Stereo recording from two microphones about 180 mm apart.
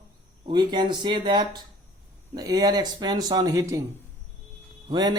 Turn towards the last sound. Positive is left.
turn(degrees=-25)  # may be behind; listen again after turning